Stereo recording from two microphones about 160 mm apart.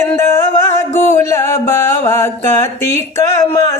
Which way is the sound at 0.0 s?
15° left (ahead or behind).